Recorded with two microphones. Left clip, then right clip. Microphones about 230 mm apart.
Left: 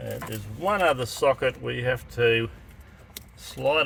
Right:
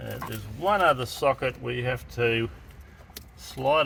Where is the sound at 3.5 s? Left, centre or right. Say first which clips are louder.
Even; left.